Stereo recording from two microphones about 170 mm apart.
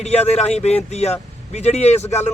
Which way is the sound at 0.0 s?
40° left (ahead or behind).